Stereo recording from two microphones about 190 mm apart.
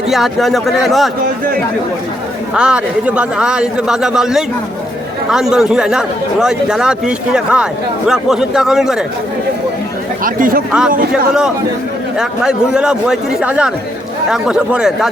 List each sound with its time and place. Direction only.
0.1 s speech: centre (ahead or behind)
2.6 s speech: 5° right (ahead or behind)
10.2 s speech: 45° right (ahead or behind)
10.7 s speech: 5° right (ahead or behind)
12.1 s speech: 5° right (ahead or behind)